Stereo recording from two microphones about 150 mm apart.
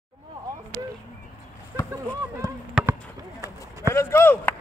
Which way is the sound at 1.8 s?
20° left (ahead or behind).